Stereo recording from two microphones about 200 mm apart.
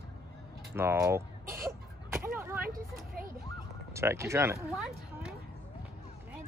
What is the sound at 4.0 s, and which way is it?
Speech, 15° right (ahead or behind).